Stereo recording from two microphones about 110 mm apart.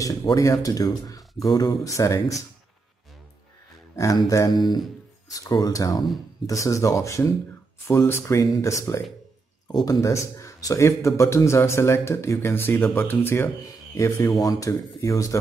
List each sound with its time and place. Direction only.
0.0 s speech: 35° left (ahead or behind)
3.9 s speech: 30° left (ahead or behind)
4.5 s a man's voice: 40° left (ahead or behind)